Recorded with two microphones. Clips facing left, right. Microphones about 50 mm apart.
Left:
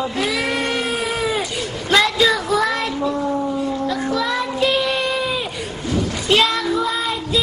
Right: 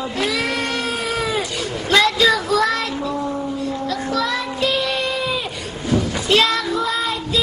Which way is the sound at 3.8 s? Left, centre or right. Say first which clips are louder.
Right 2 dB; centre.